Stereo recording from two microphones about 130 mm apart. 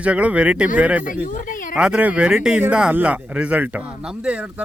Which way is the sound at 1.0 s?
90° left.